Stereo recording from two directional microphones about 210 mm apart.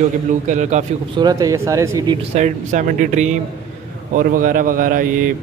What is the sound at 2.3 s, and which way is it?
Speech, 35° right (ahead or behind).